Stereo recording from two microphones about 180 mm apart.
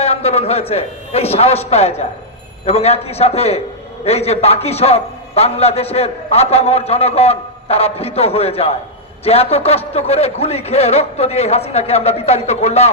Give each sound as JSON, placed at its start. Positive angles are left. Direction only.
{"t": 0.0, "sound": "a man's voice", "side_deg": 35}